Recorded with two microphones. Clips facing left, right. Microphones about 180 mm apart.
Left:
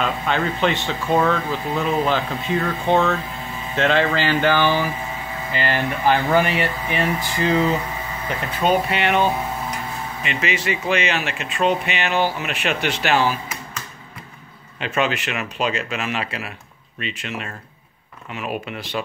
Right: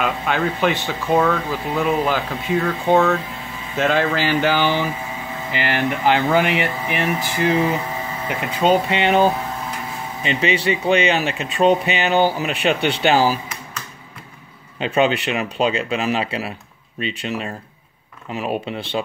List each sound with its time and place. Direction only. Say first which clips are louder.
0.0 s speech: right 1 dB; 5° right (ahead or behind); by 13.4 s 35° right (ahead or behind)
14.8 s speech: right 4 dB; 30° right (ahead or behind)